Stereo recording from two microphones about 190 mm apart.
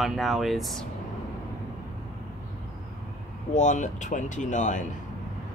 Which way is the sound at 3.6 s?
40° left (ahead or behind).